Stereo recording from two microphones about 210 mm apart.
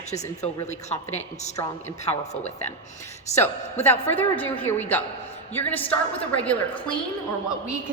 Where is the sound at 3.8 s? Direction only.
10° left (ahead or behind).